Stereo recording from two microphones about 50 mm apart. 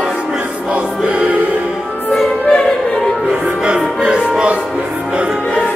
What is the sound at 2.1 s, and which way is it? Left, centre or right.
Music, centre.